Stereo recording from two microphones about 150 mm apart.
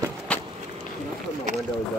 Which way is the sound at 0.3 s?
10° left (ahead or behind).